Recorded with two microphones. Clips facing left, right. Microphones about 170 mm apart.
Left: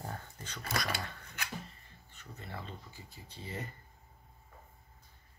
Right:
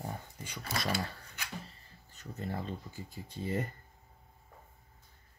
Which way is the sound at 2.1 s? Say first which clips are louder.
Right 7 dB; 40° right (ahead or behind).